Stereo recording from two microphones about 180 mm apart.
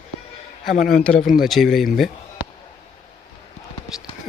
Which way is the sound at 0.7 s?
50° left (ahead or behind).